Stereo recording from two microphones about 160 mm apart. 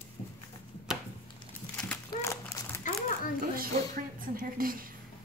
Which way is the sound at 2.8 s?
60° left (ahead or behind).